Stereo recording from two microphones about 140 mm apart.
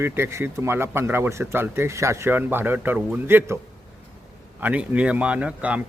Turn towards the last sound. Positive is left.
turn(degrees=-10)  # may be behind; listen again after turning